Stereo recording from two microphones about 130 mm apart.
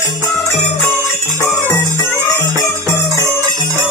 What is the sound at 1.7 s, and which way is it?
Music, 20° left (ahead or behind).